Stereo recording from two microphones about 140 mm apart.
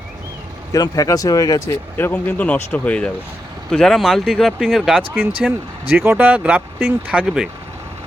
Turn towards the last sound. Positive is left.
turn(degrees=-5)  # may be behind; listen again after turning